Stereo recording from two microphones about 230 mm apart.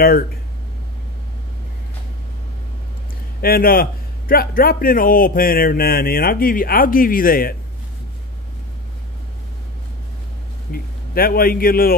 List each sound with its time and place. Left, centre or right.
3.3 s a man's voice: left
10.7 s a man's voice: left